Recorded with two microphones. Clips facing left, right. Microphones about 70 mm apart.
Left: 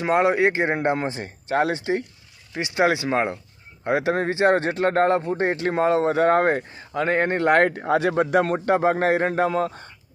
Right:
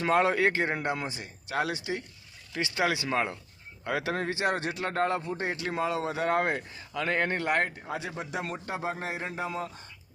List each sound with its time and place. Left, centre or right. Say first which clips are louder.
0.0 s speech: left 5 dB; left